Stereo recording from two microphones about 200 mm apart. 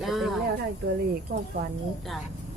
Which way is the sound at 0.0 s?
Centre (ahead or behind).